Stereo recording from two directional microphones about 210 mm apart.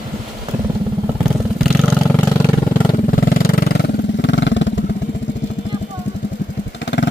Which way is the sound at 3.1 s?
45° left (ahead or behind).